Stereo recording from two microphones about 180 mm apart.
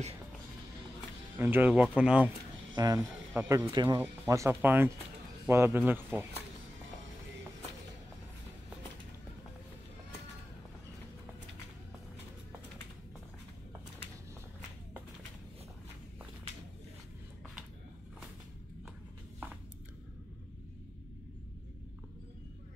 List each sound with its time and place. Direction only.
1.4 s speech: 10° right (ahead or behind)
2.7 s speech: 20° right (ahead or behind)